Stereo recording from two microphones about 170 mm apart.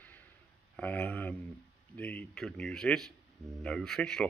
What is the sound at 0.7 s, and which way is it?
Speech, 10° left (ahead or behind).